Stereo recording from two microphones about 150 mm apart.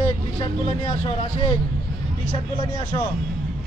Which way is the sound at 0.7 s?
30° left (ahead or behind).